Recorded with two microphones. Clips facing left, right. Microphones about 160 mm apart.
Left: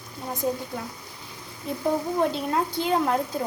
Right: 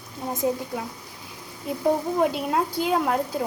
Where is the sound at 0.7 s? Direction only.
5° right (ahead or behind).